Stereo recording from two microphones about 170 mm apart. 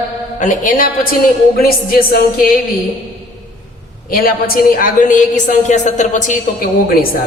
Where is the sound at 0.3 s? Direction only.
50° left (ahead or behind).